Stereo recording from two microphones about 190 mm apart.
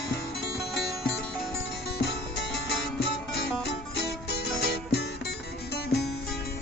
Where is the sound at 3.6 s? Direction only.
60° left (ahead or behind).